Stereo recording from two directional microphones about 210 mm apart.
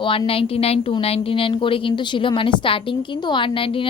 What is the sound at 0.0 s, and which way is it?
A woman's voice, 25° left (ahead or behind).